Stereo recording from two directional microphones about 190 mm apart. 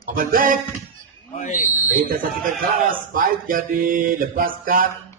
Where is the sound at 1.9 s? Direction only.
45° right (ahead or behind).